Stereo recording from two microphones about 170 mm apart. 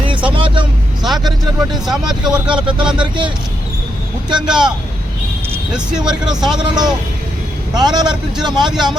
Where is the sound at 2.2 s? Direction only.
5° right (ahead or behind).